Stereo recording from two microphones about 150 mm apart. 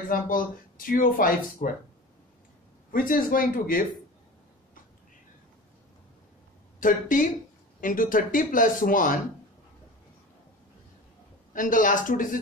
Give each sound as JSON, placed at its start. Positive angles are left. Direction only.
{"t": 0.1, "sound": "speech", "side_deg": 70}
{"t": 2.9, "sound": "speech", "side_deg": 70}
{"t": 6.8, "sound": "speech", "side_deg": 60}
{"t": 11.5, "sound": "speech", "side_deg": 60}